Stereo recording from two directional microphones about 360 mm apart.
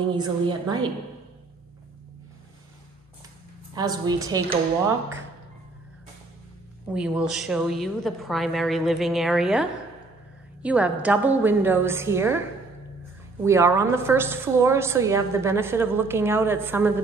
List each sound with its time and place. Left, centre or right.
0.1 s a woman's voice: centre
3.7 s a woman's voice: centre
6.9 s a woman's voice: centre
13.4 s a woman's voice: centre